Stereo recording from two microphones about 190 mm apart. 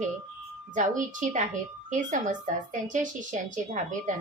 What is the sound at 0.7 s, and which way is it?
A woman's voice, 40° right (ahead or behind).